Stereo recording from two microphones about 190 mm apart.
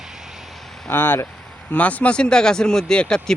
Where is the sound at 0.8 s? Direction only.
10° left (ahead or behind).